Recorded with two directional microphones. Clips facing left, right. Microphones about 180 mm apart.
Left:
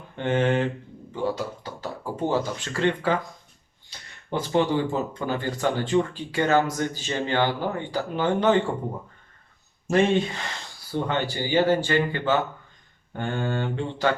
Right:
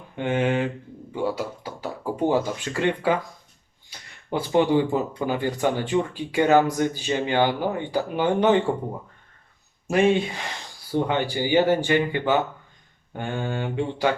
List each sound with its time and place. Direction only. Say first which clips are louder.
0.2 s speech: even; 10° right (ahead or behind)
9.8 s speech: right 1 dB; 10° right (ahead or behind)